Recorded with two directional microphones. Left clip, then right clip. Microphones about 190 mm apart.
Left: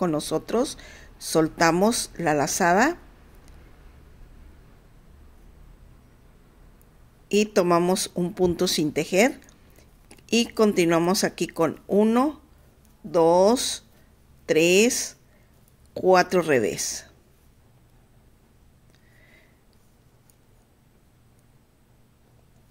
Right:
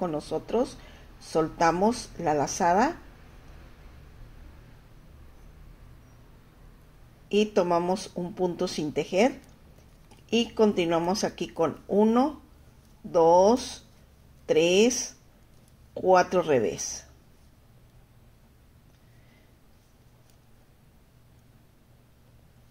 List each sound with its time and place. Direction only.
0.0 s speech: 30° left (ahead or behind)
7.2 s speech: 25° left (ahead or behind)